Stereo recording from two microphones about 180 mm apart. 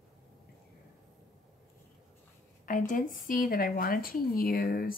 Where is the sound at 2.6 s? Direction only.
45° left (ahead or behind).